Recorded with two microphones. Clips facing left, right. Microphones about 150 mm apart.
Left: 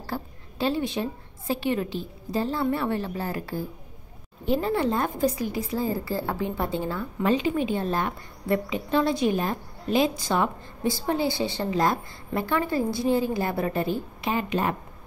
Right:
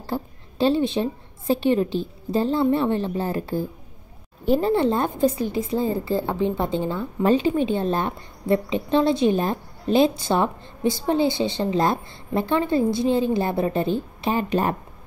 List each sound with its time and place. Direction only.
0.0 s a woman's voice: 25° right (ahead or behind)
7.2 s a woman's voice: 30° right (ahead or behind)